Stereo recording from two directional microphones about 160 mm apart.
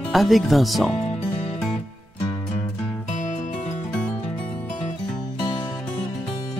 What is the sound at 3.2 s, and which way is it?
Music, 50° left (ahead or behind).